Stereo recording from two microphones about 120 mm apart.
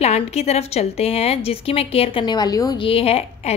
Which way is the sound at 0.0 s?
60° left (ahead or behind).